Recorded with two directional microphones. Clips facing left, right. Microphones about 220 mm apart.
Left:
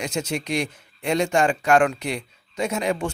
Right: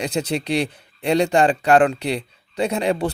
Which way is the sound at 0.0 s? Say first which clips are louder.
Right 4 dB; 35° right (ahead or behind).